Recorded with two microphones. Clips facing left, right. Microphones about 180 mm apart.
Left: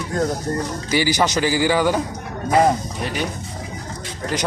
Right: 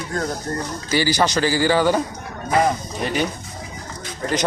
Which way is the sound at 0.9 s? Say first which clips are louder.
Even; 15° left (ahead or behind).